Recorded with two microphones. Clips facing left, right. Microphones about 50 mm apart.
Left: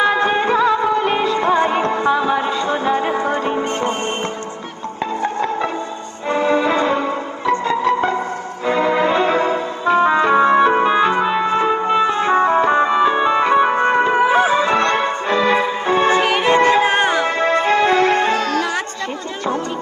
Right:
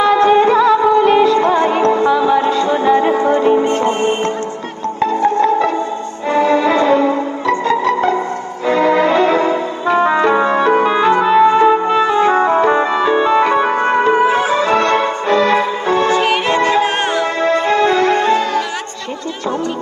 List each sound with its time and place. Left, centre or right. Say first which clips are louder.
0.0 s music: right 6 dB; centre
5.4 s music: right 7 dB; centre
14.4 s music: right 2 dB; centre
16.0 s music: even; left